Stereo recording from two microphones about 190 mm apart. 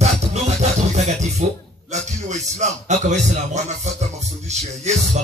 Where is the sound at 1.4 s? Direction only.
35° right (ahead or behind).